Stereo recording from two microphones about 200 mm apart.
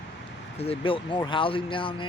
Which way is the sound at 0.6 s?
30° left (ahead or behind).